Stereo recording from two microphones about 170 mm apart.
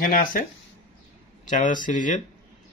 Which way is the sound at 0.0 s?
55° left (ahead or behind).